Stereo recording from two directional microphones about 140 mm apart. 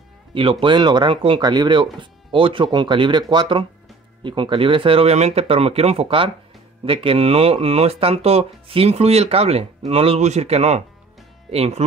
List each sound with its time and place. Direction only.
0.3 s speech: 40° right (ahead or behind)